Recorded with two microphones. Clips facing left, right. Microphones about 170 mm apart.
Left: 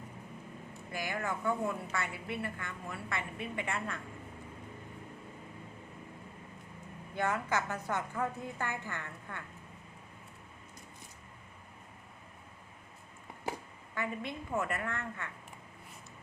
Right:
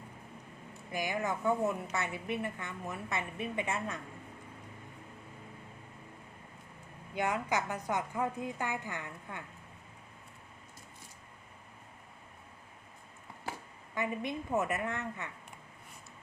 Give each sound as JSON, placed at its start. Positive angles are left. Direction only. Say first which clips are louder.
{"t": 0.9, "sound": "a woman's voice", "louder": "right 3 dB", "side_deg": -15}
{"t": 7.2, "sound": "a woman's voice", "louder": "even", "side_deg": -15}
{"t": 13.9, "sound": "a woman's voice", "louder": "right 3 dB", "side_deg": -20}